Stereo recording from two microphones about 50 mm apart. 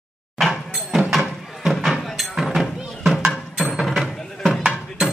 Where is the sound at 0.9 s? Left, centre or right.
Centre.